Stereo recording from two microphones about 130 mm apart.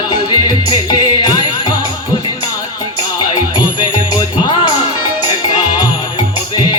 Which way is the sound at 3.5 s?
35° left (ahead or behind).